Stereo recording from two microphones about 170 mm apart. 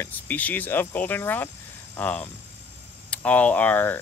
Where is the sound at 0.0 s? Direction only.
10° left (ahead or behind).